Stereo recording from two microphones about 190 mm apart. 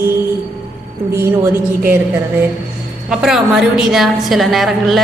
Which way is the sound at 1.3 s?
15° right (ahead or behind).